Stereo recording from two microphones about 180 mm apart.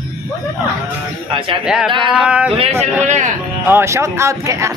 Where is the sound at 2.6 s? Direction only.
35° right (ahead or behind).